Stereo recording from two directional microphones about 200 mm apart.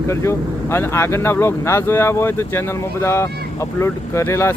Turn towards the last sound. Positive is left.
turn(degrees=15)  # may be behind; listen again after turning